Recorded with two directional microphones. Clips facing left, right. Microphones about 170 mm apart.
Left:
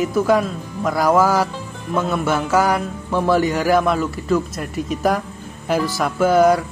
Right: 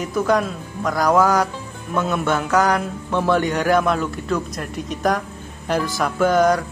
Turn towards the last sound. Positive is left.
turn(degrees=5)  # may be behind; listen again after turning